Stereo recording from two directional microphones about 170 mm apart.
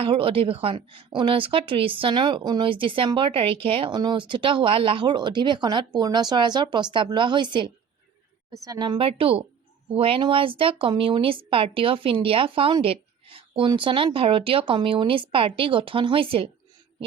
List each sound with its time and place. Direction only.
0.0 s a woman's voice: 30° right (ahead or behind)